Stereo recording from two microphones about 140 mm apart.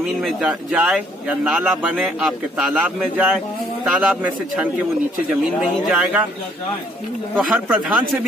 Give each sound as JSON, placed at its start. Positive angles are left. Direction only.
{"t": 0.0, "sound": "speech", "side_deg": -5}
{"t": 7.3, "sound": "speech", "side_deg": -10}